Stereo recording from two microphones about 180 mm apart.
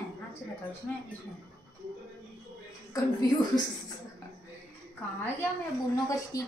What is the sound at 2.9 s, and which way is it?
Speech, 20° left (ahead or behind).